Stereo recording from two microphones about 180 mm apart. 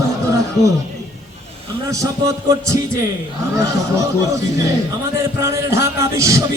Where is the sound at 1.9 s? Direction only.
15° right (ahead or behind).